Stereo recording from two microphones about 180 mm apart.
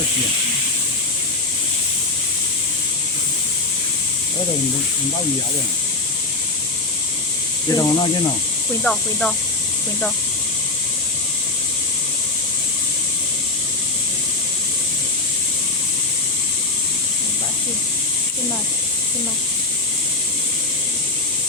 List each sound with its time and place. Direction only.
7.7 s speech: 20° left (ahead or behind)
8.8 s speech: 5° left (ahead or behind)